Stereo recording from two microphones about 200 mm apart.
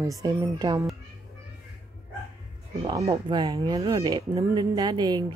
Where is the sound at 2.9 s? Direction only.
20° right (ahead or behind).